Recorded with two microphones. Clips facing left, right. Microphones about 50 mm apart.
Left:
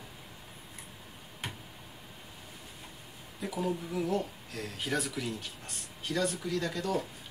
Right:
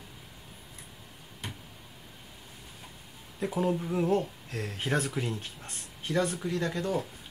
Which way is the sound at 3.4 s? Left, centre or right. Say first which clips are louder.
Right 5 dB; right.